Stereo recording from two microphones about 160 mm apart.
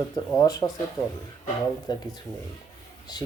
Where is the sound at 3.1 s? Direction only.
25° left (ahead or behind).